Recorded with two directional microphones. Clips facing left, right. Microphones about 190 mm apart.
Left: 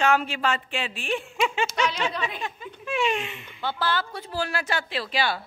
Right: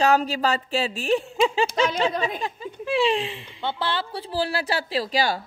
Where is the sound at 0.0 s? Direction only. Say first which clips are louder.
Right 3 dB; 40° right (ahead or behind).